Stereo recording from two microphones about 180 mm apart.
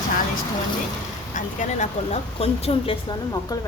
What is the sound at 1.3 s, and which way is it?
Speech, 45° left (ahead or behind).